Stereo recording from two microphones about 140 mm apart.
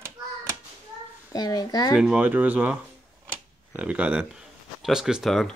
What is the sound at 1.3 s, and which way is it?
Speech, 30° left (ahead or behind).